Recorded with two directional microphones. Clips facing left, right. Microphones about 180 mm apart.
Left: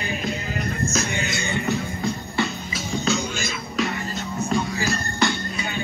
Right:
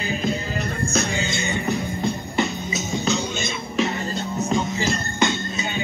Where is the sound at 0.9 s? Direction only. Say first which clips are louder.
Right 2 dB; 30° right (ahead or behind).